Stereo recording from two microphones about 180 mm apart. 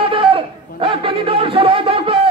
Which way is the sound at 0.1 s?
30° right (ahead or behind).